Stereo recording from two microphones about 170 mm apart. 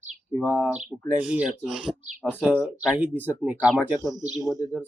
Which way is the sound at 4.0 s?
20° left (ahead or behind).